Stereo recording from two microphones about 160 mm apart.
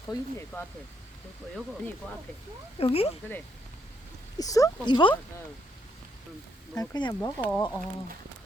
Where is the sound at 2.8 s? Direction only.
35° left (ahead or behind).